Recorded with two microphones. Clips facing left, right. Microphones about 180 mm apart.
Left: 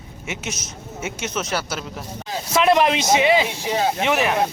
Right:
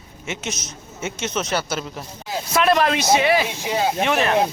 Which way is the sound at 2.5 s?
20° left (ahead or behind).